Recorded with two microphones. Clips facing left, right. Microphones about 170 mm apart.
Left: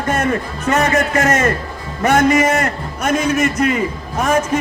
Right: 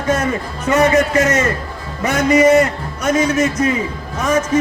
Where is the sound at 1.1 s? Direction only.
55° left (ahead or behind).